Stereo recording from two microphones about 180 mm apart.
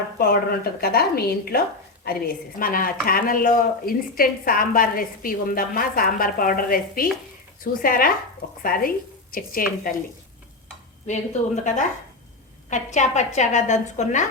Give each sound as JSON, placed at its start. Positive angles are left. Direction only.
{"t": 0.2, "sound": "a woman's voice", "side_deg": 55}
{"t": 11.6, "sound": "a woman's voice", "side_deg": 45}